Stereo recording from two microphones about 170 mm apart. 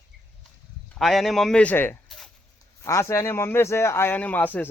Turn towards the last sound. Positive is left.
turn(degrees=10)  # may be behind; listen again after turning